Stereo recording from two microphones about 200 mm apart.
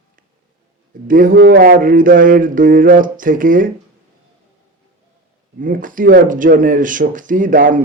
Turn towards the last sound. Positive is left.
turn(degrees=-40)  # may be behind; listen again after turning